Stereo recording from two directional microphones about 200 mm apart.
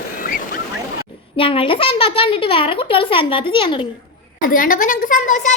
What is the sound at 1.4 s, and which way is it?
A woman's voice, 25° left (ahead or behind).